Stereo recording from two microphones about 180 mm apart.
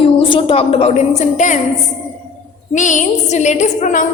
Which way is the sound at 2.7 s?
45° left (ahead or behind).